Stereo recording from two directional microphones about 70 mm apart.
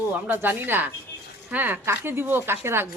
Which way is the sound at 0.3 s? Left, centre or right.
Right.